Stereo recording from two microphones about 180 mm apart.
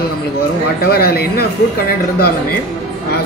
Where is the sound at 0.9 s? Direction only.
60° left (ahead or behind).